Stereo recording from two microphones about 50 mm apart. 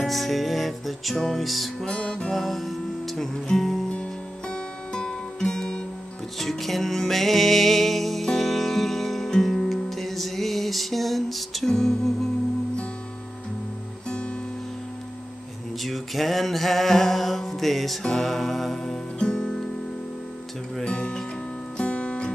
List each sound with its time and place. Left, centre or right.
0.0 s a sound: centre
1.9 s music: centre
2.3 s music: centre
3.4 s a sound: centre
3.9 s music: centre
14.0 s music: left
15.8 s a sound: centre
18.0 s music: centre
20.8 s music: centre